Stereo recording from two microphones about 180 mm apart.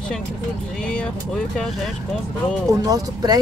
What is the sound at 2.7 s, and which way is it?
Speech, 20° right (ahead or behind).